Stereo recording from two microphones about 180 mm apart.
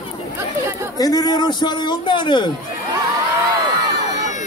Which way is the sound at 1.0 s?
20° left (ahead or behind).